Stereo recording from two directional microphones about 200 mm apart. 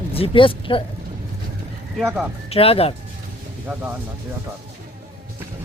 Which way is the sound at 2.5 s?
30° left (ahead or behind).